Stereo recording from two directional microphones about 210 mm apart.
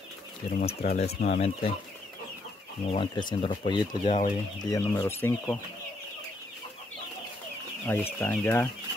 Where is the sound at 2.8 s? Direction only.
25° left (ahead or behind).